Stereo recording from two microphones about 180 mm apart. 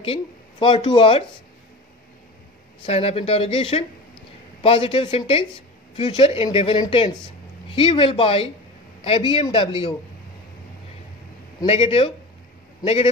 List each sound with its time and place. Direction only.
0.0 s speech: 30° left (ahead or behind)
2.9 s a man's voice: 35° left (ahead or behind)
11.6 s speech: 35° left (ahead or behind)